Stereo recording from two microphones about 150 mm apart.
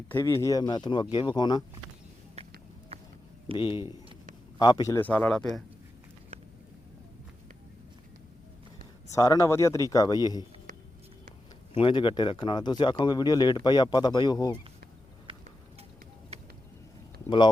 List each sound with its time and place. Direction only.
0.1 s speech: 15° left (ahead or behind)
3.8 s speech: 20° right (ahead or behind)
4.5 s speech: 25° left (ahead or behind); by 5.5 s 10° left (ahead or behind)
9.1 s speech: 20° left (ahead or behind)
11.7 s speech: 35° left (ahead or behind)
17.2 s speech: 30° left (ahead or behind)